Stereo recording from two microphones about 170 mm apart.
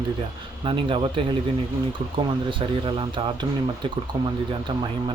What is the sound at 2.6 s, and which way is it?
Speech, 30° right (ahead or behind).